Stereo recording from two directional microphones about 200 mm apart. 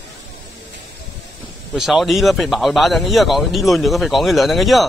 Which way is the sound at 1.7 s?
Centre (ahead or behind).